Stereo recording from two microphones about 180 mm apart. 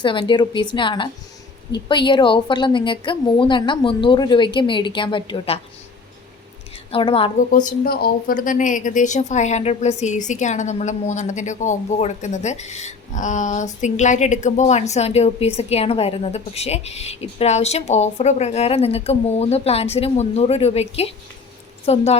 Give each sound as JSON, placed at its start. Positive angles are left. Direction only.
{"t": 0.0, "sound": "a woman's voice", "side_deg": 25}
{"t": 6.9, "sound": "speech", "side_deg": 30}
{"t": 7.5, "sound": "speech", "side_deg": 50}